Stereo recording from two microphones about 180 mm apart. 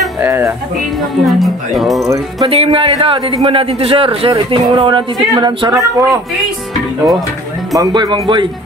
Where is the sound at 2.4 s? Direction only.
30° right (ahead or behind).